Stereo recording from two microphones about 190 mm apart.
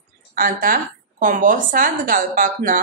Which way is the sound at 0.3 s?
45° right (ahead or behind).